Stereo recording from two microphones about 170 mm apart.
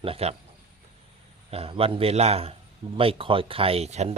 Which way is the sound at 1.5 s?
35° right (ahead or behind).